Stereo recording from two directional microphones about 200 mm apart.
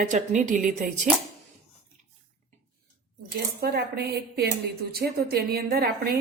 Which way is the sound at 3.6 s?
55° right (ahead or behind).